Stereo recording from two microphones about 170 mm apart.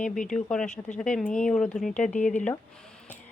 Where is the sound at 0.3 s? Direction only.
5° left (ahead or behind).